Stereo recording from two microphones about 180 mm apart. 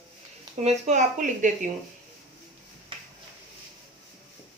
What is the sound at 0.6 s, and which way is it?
A woman's voice, 40° right (ahead or behind).